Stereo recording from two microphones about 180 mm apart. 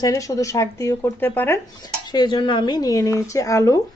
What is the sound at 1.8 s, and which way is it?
Speech, 25° left (ahead or behind).